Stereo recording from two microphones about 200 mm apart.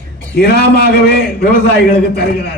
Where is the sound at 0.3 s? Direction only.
55° left (ahead or behind).